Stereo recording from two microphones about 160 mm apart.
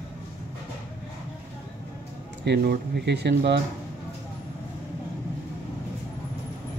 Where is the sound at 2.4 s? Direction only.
90° right.